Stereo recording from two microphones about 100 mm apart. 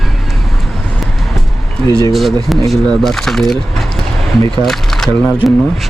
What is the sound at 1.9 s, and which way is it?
Speech, 40° left (ahead or behind).